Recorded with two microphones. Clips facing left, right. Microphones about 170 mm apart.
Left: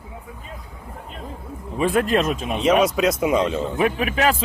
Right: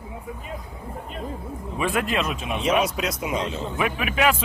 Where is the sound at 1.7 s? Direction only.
40° left (ahead or behind).